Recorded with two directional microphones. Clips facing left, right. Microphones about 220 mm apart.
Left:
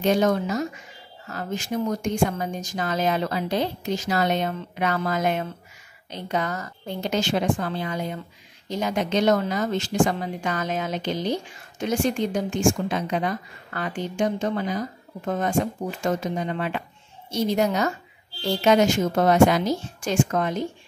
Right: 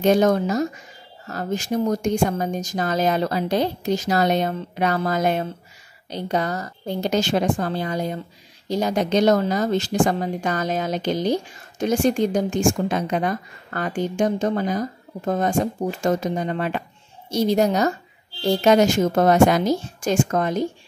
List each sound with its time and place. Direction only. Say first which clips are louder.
0.0 s a woman's voice: right 4 dB; 45° right (ahead or behind)